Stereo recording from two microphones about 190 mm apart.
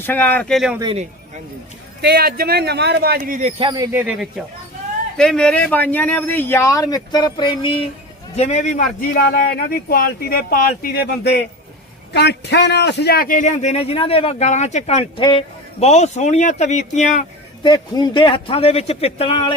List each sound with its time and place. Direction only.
0.0 s speech: 10° left (ahead or behind)
2.0 s speech: 55° right (ahead or behind)
3.2 s speech: 40° right (ahead or behind)
3.6 s speech: 20° right (ahead or behind)
3.9 s speech: 5° right (ahead or behind); by 7.8 s 25° left (ahead or behind)
8.4 s a man's voice: 35° left (ahead or behind)
17.6 s speech: 25° left (ahead or behind)